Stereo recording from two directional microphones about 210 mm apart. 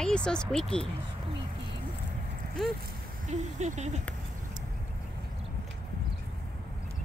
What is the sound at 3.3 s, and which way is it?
Speech, 35° right (ahead or behind).